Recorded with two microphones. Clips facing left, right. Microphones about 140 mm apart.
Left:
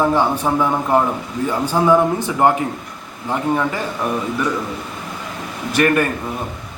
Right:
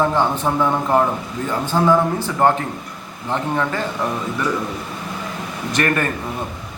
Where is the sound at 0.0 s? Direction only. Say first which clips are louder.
Left 1 dB; 10° left (ahead or behind).